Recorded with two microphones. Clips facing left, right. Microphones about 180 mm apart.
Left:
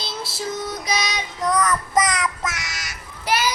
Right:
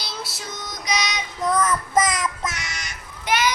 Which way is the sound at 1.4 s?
Centre (ahead or behind).